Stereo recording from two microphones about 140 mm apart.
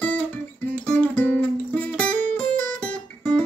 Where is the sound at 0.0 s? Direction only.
10° left (ahead or behind).